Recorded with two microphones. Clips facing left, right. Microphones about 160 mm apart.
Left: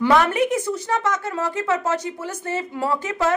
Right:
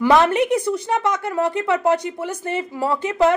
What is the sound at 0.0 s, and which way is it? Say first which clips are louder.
A woman's voice: right 2 dB; 20° right (ahead or behind).